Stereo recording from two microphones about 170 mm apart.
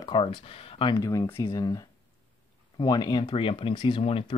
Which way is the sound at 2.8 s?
25° left (ahead or behind).